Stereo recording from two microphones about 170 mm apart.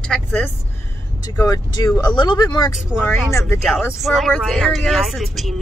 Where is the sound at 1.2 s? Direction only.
20° left (ahead or behind).